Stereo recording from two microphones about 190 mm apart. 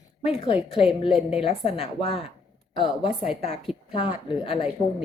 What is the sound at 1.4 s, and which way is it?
Speech, 30° left (ahead or behind).